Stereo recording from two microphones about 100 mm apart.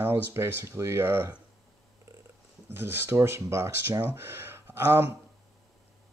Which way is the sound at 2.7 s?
25° right (ahead or behind).